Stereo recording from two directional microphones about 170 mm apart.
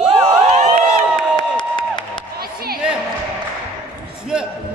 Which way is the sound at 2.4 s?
65° right (ahead or behind).